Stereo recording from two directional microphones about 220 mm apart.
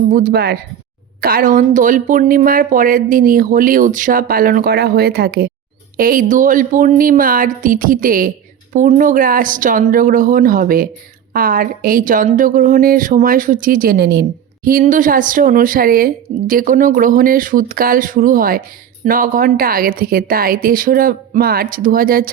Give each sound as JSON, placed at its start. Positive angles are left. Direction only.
{"t": 0.1, "sound": "a woman's voice", "side_deg": -40}